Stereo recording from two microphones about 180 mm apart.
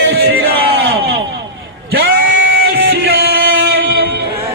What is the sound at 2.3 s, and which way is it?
Music, 90° right.